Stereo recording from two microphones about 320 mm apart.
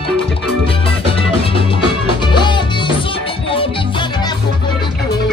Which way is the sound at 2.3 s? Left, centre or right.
Centre.